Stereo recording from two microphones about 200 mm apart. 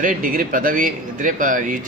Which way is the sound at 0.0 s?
45° right (ahead or behind).